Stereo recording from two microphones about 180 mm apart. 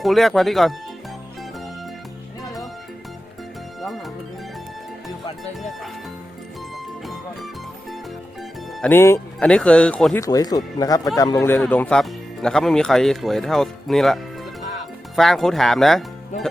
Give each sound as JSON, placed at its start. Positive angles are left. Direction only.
{"t": 0.0, "sound": "speech", "side_deg": 0}
{"t": 2.4, "sound": "music", "side_deg": 0}
{"t": 3.8, "sound": "music", "side_deg": 0}
{"t": 8.8, "sound": "speech", "side_deg": 10}
{"t": 10.2, "sound": "speech", "side_deg": 20}